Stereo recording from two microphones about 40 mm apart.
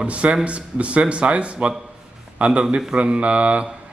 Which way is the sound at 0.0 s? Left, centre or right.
Right.